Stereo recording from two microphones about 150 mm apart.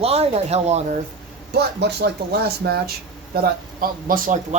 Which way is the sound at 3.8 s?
70° right (ahead or behind).